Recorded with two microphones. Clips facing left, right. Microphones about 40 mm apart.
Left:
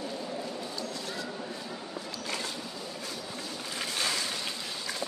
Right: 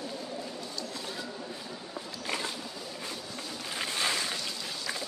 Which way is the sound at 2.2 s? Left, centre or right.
Centre.